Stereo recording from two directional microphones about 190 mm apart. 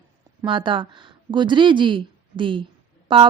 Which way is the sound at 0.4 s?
25° right (ahead or behind).